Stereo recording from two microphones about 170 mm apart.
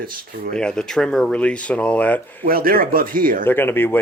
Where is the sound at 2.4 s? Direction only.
60° right (ahead or behind).